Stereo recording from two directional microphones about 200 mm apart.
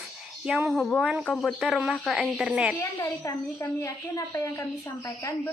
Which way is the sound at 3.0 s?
15° left (ahead or behind).